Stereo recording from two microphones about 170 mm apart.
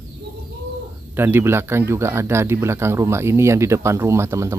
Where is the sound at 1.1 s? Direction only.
15° right (ahead or behind).